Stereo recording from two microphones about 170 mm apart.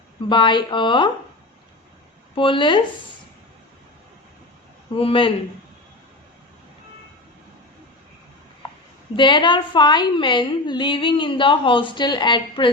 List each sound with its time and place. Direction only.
0.3 s a woman's voice: 25° left (ahead or behind)
2.3 s a woman's voice: 30° left (ahead or behind)
4.9 s speech: 30° left (ahead or behind)
9.1 s a woman's voice: 30° left (ahead or behind)